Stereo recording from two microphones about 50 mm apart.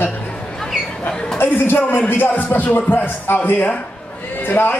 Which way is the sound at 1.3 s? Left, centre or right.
Left.